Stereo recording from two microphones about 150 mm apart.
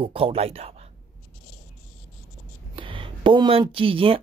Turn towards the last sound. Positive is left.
turn(degrees=-35)  # may be behind; listen again after turning